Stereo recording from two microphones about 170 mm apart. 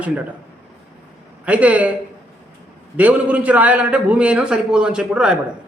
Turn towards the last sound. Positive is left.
turn(degrees=-5)  # may be behind; listen again after turning